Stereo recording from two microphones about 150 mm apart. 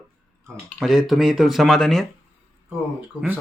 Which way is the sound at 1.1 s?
Centre (ahead or behind).